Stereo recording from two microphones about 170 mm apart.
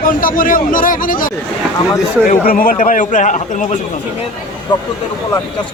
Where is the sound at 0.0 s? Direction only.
55° left (ahead or behind).